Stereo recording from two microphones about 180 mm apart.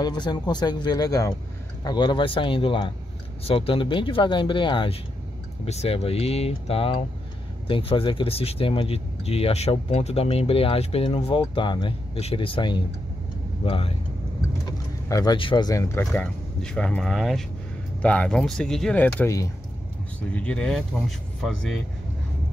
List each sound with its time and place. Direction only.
0.0 s speech: 25° left (ahead or behind)
15.0 s speech: 20° left (ahead or behind)
20.3 s speech: 5° left (ahead or behind)